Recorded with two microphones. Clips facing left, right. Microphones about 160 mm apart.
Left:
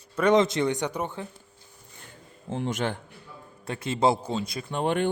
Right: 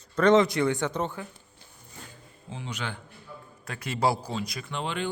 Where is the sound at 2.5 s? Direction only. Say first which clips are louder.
Left 8 dB; 50° left (ahead or behind).